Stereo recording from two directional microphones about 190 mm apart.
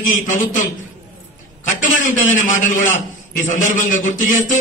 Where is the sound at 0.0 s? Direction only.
40° left (ahead or behind).